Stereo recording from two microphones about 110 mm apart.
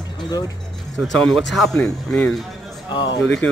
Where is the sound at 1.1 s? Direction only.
5° left (ahead or behind).